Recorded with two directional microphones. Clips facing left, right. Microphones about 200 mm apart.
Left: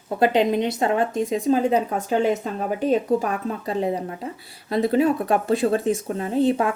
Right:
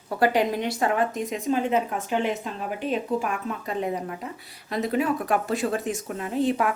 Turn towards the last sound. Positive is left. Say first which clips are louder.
# left 4 dB
turn(degrees=30)  # may be behind; listen again after turning